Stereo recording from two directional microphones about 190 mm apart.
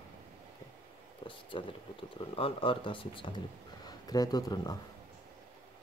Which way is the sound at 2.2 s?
25° left (ahead or behind).